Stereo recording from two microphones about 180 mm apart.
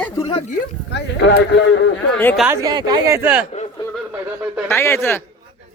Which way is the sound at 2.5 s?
20° right (ahead or behind).